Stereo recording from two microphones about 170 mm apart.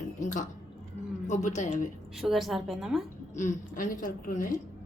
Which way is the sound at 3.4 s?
50° left (ahead or behind).